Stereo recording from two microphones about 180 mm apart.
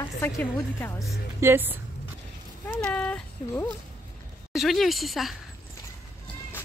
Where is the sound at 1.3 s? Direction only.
10° right (ahead or behind).